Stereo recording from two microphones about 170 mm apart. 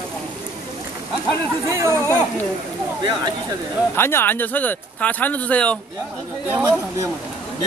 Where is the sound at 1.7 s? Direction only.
15° right (ahead or behind).